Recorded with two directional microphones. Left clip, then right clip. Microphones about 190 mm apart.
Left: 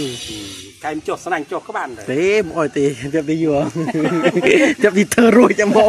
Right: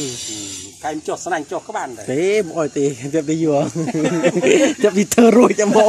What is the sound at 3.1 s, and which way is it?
Speech, 20° right (ahead or behind).